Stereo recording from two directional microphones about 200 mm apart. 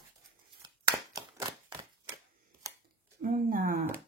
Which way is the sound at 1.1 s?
15° right (ahead or behind).